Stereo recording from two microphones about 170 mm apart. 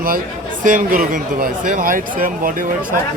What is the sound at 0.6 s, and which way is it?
Speech, 50° right (ahead or behind).